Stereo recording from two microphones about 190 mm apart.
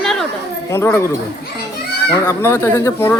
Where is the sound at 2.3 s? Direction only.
15° left (ahead or behind).